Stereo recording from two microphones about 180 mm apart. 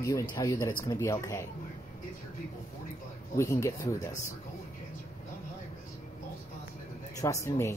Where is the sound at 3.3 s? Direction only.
15° left (ahead or behind).